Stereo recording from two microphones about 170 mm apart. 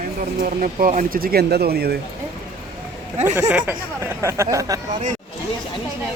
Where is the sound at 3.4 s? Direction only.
10° right (ahead or behind).